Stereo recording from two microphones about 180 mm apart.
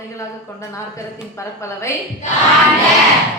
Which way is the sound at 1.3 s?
15° left (ahead or behind).